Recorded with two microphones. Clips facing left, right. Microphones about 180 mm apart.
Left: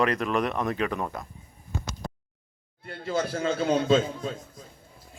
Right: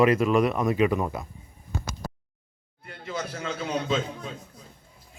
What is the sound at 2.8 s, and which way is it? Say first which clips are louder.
Speech: left 5 dB; 35° left (ahead or behind).